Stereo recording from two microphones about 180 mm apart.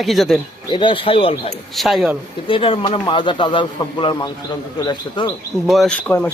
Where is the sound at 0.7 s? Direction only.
25° left (ahead or behind).